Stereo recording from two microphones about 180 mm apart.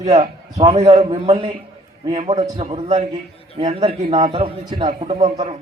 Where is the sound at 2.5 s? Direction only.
25° right (ahead or behind).